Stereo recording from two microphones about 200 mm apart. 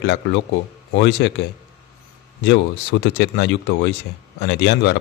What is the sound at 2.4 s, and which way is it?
A man's voice, 60° left (ahead or behind).